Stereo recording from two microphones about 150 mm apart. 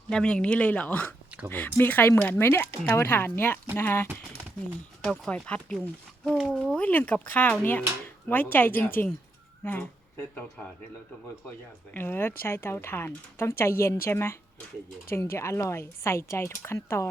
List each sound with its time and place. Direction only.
0.1 s speech: 5° left (ahead or behind)
11.9 s speech: 15° left (ahead or behind)